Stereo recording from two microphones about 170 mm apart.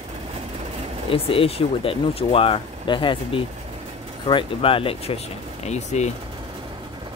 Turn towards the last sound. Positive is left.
turn(degrees=40)  # may be behind; listen again after turning